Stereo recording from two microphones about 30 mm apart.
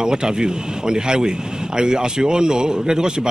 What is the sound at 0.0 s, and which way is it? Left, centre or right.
Speech, right.